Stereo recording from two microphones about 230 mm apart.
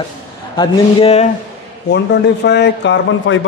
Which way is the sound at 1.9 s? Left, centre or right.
Left.